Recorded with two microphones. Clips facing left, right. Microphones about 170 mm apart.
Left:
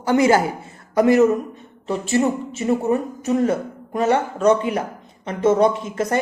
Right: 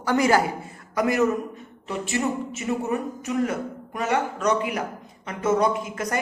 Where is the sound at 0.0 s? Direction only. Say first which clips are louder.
Left 4 dB; 25° left (ahead or behind).